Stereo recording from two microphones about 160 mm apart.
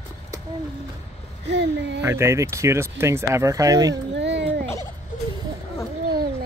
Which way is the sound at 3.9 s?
90° right.